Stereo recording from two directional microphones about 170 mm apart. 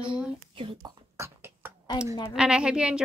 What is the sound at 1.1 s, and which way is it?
Beatboxing, 15° right (ahead or behind).